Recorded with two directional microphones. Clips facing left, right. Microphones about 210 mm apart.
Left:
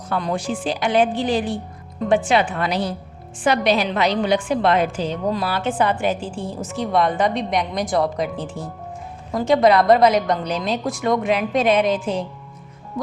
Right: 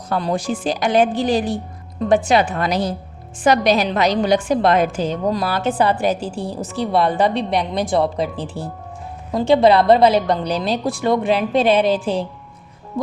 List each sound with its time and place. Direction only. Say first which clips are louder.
0.1 s a woman's voice: right 2 dB; 35° right (ahead or behind)